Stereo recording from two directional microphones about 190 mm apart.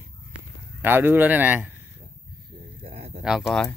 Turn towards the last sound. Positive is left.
turn(degrees=0)  # may be behind; listen again after turning